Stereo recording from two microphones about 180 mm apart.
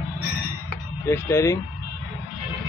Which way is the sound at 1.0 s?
15° left (ahead or behind).